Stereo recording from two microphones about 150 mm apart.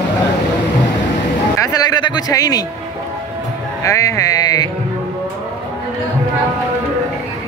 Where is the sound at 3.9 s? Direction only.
20° left (ahead or behind).